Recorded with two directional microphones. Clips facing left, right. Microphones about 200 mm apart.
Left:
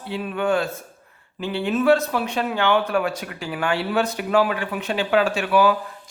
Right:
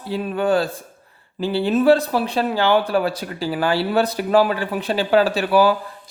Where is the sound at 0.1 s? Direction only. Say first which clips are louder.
Right 3 dB; 35° right (ahead or behind).